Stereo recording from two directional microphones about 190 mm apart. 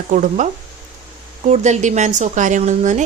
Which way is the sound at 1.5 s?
35° right (ahead or behind).